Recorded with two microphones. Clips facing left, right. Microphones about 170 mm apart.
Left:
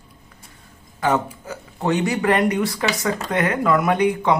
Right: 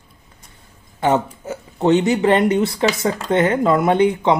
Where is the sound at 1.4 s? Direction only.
25° right (ahead or behind).